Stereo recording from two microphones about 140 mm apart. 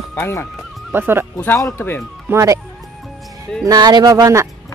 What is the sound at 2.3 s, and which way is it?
Speech, 20° right (ahead or behind).